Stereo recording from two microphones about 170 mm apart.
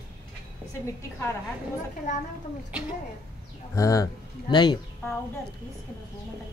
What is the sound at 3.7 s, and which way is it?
Speech, 20° left (ahead or behind).